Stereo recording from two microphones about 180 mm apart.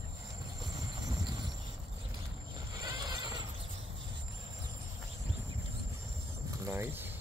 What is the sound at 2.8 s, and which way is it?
Neigh, 20° right (ahead or behind).